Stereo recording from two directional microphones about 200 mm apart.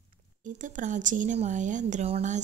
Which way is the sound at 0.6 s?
40° right (ahead or behind).